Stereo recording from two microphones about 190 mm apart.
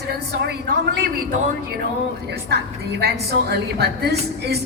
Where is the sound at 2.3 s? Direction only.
60° right (ahead or behind).